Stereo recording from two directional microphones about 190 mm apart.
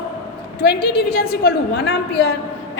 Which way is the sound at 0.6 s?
55° left (ahead or behind).